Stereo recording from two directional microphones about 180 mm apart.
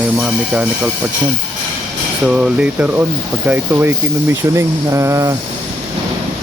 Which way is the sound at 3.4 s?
10° right (ahead or behind).